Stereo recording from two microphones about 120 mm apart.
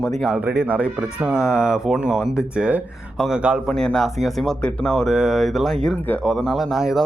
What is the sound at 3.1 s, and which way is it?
A man's voice, centre (ahead or behind).